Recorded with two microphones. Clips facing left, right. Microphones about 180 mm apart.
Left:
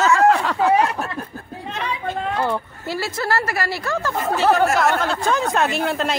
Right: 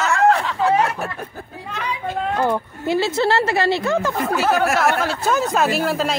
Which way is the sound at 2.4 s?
15° right (ahead or behind).